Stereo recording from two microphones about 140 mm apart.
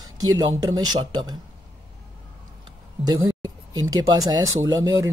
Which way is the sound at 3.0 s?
25° right (ahead or behind).